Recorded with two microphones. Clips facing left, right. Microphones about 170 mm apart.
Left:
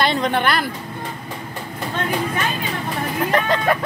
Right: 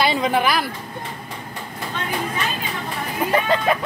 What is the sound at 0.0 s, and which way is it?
Speech, 5° right (ahead or behind).